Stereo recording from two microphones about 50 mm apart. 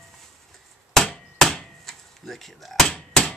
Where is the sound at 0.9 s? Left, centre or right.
Centre.